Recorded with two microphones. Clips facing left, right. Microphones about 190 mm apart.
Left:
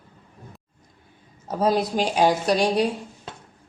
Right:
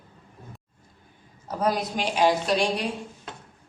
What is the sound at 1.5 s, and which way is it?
Speech, 25° left (ahead or behind).